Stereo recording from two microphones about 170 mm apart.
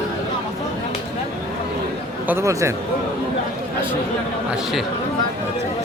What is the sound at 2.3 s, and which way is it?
Speech, 15° right (ahead or behind).